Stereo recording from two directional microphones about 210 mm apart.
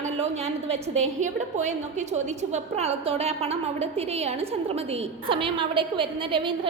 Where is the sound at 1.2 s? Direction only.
35° right (ahead or behind).